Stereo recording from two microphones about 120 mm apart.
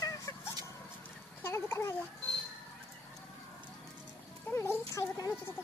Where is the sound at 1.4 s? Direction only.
20° left (ahead or behind).